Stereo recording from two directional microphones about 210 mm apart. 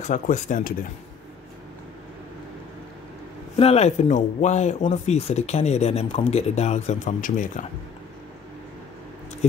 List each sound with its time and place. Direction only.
0.0 s speech: 35° left (ahead or behind)
3.5 s speech: 30° left (ahead or behind)